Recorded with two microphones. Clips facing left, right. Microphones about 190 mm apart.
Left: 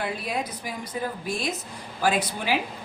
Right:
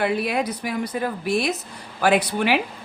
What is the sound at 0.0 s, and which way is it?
Speech, 70° right (ahead or behind).